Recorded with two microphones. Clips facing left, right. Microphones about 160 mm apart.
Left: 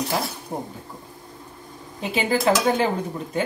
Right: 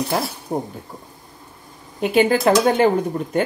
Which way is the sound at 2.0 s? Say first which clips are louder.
Right 7 dB; 60° right (ahead or behind).